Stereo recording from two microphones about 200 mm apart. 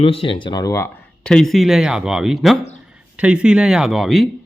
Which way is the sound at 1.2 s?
5° left (ahead or behind).